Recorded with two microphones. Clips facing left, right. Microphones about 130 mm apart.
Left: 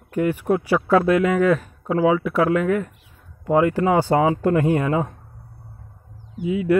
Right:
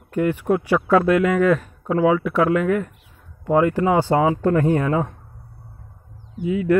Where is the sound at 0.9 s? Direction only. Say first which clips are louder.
Even; 30° left (ahead or behind).